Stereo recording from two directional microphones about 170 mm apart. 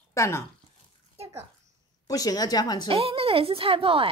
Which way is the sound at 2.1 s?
20° left (ahead or behind).